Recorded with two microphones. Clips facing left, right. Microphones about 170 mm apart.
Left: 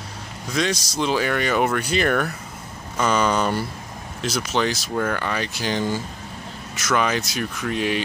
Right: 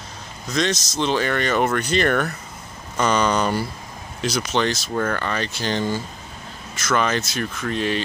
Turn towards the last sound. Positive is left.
turn(degrees=10)  # may be behind; listen again after turning